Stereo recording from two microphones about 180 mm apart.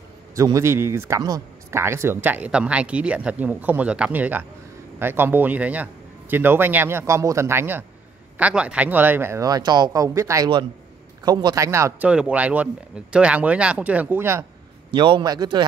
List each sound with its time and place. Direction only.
0.4 s speech: 15° right (ahead or behind)
14.9 s a man's voice: 25° right (ahead or behind)